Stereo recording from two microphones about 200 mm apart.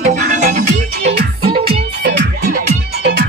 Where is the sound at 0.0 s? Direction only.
40° right (ahead or behind).